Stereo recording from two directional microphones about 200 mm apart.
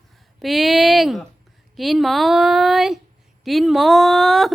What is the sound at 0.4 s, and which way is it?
A woman's voice, centre (ahead or behind).